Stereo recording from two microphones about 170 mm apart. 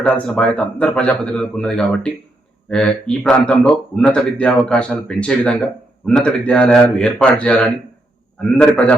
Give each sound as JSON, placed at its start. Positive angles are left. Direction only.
{"t": 0.0, "sound": "speech", "side_deg": 5}